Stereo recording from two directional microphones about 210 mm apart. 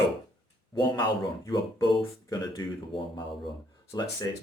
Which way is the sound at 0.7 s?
20° left (ahead or behind).